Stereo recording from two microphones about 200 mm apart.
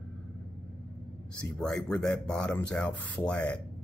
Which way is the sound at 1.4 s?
5° left (ahead or behind).